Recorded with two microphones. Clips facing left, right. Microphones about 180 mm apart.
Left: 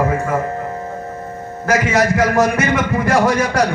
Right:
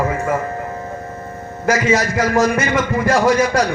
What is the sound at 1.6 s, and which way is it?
A man's voice, 60° left (ahead or behind).